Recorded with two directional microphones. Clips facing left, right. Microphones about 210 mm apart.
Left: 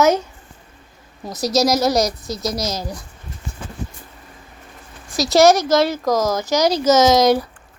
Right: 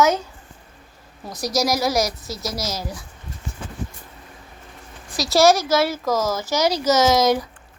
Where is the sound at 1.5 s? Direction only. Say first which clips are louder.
Left 4 dB; 20° left (ahead or behind).